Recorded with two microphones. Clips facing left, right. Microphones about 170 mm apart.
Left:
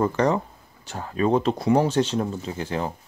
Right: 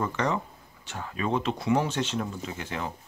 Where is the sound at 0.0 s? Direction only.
35° left (ahead or behind).